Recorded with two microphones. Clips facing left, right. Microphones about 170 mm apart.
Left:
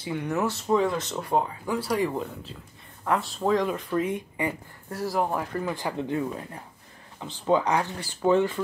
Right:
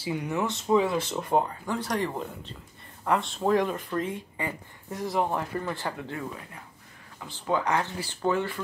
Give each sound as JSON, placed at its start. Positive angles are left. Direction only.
{"t": 0.0, "sound": "speech", "side_deg": 0}
{"t": 3.9, "sound": "speech", "side_deg": 15}
{"t": 4.9, "sound": "speech", "side_deg": 0}
{"t": 5.9, "sound": "speech", "side_deg": 20}